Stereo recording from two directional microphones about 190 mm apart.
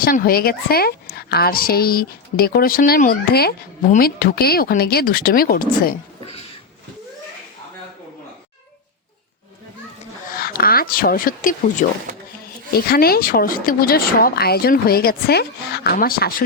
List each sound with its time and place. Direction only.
0.0 s speech: 50° left (ahead or behind)
10.2 s speech: 50° left (ahead or behind)